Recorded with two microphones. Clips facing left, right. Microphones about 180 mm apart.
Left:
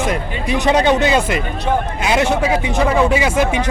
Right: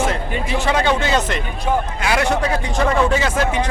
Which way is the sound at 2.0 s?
20° left (ahead or behind).